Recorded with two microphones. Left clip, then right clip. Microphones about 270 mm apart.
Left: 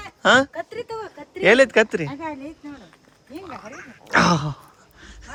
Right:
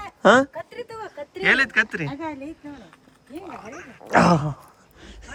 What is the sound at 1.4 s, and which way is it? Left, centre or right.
Speech, centre.